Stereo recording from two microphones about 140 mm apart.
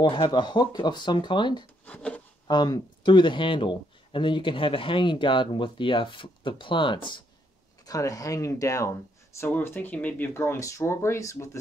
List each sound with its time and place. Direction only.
0.0 s speech: 35° left (ahead or behind)
1.9 s a sound: 10° left (ahead or behind)
2.4 s speech: 30° left (ahead or behind)
7.8 s speech: 25° left (ahead or behind)